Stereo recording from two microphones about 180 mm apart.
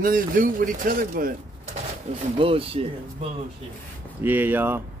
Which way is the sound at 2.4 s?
30° right (ahead or behind).